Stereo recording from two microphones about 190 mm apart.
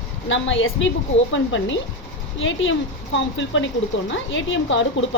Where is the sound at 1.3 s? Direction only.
75° left (ahead or behind).